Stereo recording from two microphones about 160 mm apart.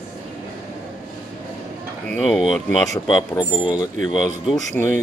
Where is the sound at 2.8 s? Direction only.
25° left (ahead or behind).